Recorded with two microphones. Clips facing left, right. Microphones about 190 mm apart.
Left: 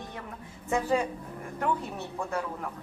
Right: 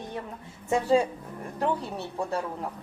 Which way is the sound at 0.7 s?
30° right (ahead or behind).